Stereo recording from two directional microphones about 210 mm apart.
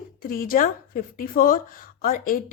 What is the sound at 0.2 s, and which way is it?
Speech, 45° left (ahead or behind).